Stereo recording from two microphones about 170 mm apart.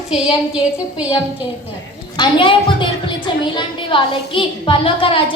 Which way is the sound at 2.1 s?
30° left (ahead or behind).